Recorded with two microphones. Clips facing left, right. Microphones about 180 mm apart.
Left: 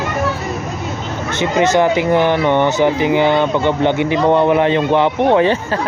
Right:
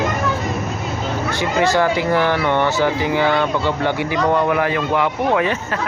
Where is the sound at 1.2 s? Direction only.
20° left (ahead or behind).